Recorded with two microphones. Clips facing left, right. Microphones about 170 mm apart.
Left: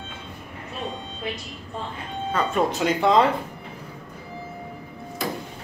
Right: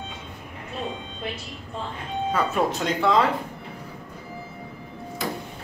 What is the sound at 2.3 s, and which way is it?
Speech, 5° right (ahead or behind).